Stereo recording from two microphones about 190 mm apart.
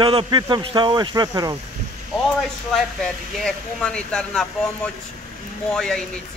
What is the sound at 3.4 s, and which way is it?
Speech, 5° left (ahead or behind).